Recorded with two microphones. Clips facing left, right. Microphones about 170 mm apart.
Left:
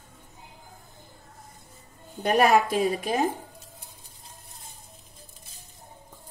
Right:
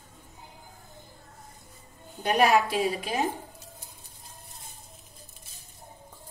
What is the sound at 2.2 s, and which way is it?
Speech, 50° left (ahead or behind).